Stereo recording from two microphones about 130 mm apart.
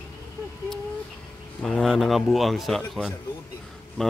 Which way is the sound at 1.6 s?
Centre (ahead or behind).